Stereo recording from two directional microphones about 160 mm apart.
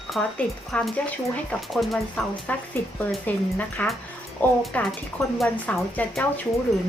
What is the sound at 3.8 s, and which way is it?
Speech, 10° left (ahead or behind).